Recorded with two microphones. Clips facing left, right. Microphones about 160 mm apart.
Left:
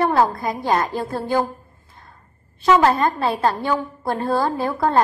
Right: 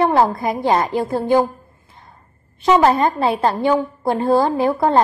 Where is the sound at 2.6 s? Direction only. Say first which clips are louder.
Right 2 dB; 20° right (ahead or behind).